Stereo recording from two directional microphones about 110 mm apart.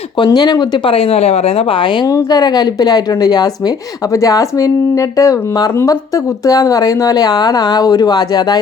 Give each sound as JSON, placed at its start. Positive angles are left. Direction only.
{"t": 0.3, "sound": "speech", "side_deg": 35}
{"t": 0.9, "sound": "speech", "side_deg": 60}
{"t": 2.0, "sound": "speech", "side_deg": 35}